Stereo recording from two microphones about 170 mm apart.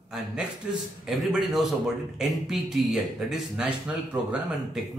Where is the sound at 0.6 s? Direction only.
5° right (ahead or behind).